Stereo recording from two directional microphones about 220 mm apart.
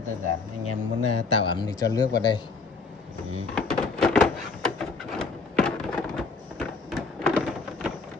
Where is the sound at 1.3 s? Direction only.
20° left (ahead or behind).